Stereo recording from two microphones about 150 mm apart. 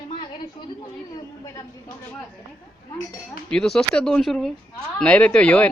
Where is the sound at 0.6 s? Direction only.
30° left (ahead or behind).